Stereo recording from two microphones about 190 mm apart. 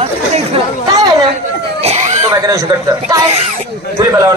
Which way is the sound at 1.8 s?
35° right (ahead or behind).